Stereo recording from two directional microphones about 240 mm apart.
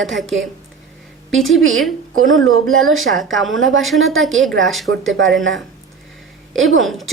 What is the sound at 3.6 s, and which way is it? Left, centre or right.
Speech, right.